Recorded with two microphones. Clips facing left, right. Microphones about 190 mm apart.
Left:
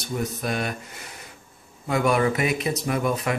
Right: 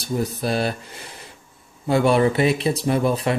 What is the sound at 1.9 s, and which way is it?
Speech, 30° right (ahead or behind).